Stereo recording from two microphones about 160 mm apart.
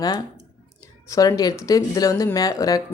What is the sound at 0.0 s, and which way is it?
Speech, 25° left (ahead or behind).